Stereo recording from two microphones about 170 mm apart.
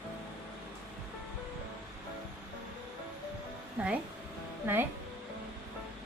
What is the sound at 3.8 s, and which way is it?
Speech, 10° right (ahead or behind).